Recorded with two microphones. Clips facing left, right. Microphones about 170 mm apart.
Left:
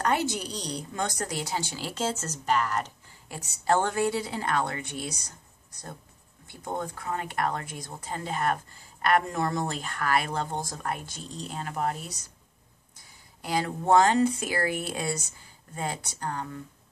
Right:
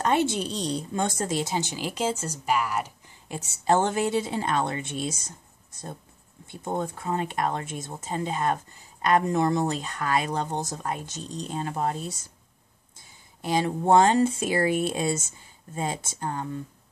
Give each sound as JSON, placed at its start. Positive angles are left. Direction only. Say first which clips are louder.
{"t": 0.0, "sound": "speech", "louder": "right 3 dB", "side_deg": -25}
{"t": 3.3, "sound": "speech", "louder": "right 2 dB", "side_deg": -25}